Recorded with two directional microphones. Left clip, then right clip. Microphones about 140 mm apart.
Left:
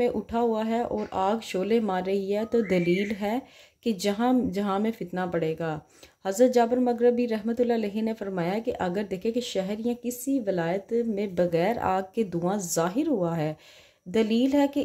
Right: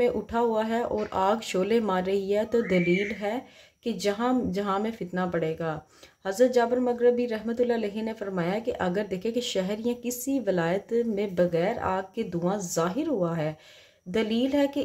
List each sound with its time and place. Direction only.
0.0 s a woman's voice: 15° left (ahead or behind)